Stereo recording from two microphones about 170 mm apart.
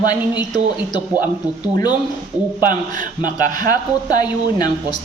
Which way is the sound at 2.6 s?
50° right (ahead or behind).